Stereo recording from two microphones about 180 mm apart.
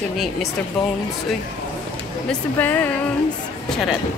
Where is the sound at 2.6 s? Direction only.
10° left (ahead or behind).